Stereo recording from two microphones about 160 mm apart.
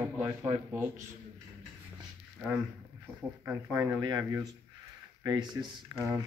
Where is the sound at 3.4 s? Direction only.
15° right (ahead or behind).